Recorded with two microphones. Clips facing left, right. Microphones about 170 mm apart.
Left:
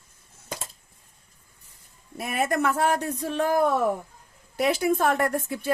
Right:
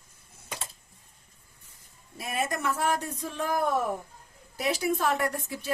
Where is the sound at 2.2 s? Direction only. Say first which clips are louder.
Left 6 dB; 60° left (ahead or behind).